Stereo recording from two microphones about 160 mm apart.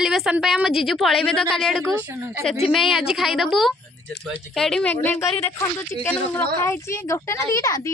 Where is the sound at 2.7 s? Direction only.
Centre (ahead or behind).